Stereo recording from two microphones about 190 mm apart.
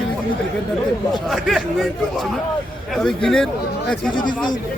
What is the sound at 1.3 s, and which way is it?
Speech, centre (ahead or behind).